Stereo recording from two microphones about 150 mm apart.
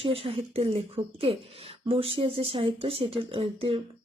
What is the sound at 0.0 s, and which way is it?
Speech, 40° right (ahead or behind).